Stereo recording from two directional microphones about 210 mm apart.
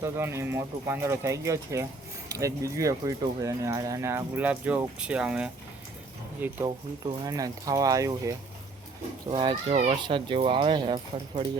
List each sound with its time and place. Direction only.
0.0 s speech: 10° right (ahead or behind)
9.3 s speech: 20° right (ahead or behind)